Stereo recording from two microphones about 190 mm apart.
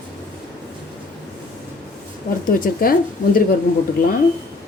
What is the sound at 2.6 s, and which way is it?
Speech, 50° left (ahead or behind).